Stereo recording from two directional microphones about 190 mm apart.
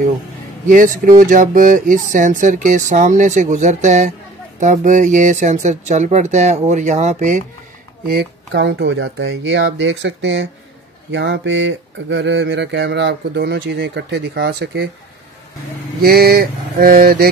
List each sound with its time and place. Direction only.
0.7 s speech: 45° right (ahead or behind)
8.1 s speech: 60° right (ahead or behind)
16.0 s mantra: 55° right (ahead or behind)